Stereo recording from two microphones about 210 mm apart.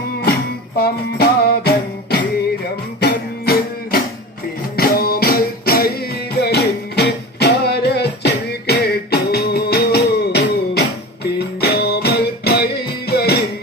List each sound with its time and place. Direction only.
0.8 s music: 50° left (ahead or behind)